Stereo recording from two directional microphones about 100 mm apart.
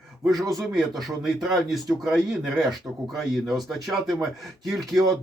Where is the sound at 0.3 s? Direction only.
40° right (ahead or behind).